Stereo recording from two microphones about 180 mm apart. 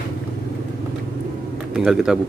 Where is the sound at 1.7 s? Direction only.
5° right (ahead or behind).